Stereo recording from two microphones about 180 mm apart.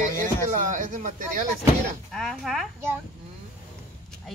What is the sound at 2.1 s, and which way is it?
Speech, centre (ahead or behind).